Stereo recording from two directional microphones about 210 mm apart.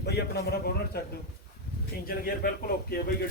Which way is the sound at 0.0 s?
50° left (ahead or behind).